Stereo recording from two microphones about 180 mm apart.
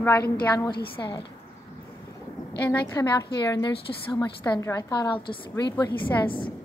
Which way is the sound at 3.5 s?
25° left (ahead or behind).